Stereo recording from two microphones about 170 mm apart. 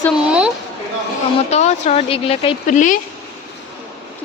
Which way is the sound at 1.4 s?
40° left (ahead or behind).